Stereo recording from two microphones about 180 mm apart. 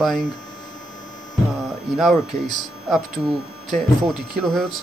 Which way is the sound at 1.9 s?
Centre (ahead or behind).